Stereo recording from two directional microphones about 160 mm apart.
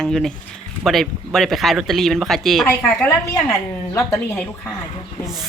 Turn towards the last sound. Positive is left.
turn(degrees=0)  # may be behind; listen again after turning